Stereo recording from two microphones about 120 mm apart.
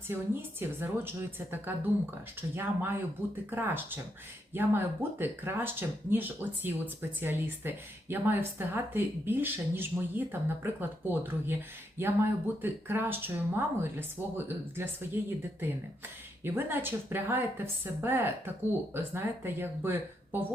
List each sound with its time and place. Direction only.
0.1 s a woman's voice: 20° right (ahead or behind)
16.4 s speech: 15° right (ahead or behind)